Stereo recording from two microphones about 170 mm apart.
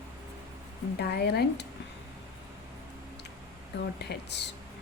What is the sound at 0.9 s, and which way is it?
Speech, 70° left (ahead or behind).